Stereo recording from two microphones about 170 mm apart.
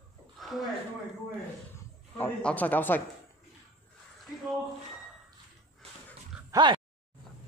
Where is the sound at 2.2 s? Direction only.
10° left (ahead or behind).